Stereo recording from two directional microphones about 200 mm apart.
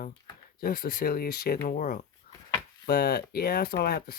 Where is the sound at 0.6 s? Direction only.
50° left (ahead or behind).